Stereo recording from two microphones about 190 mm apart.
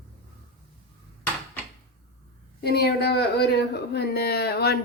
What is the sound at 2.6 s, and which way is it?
Speech, 55° left (ahead or behind).